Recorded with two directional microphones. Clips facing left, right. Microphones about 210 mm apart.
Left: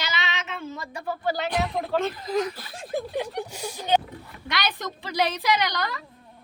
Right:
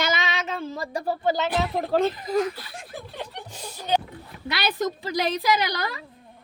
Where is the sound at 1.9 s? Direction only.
40° right (ahead or behind).